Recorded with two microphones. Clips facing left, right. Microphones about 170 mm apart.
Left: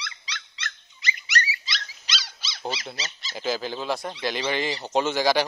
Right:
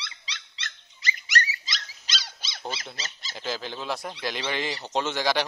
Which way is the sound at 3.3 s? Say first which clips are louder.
Left 5 dB; 5° left (ahead or behind).